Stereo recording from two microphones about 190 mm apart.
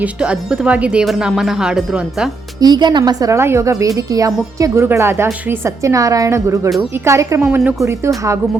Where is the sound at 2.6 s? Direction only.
20° right (ahead or behind).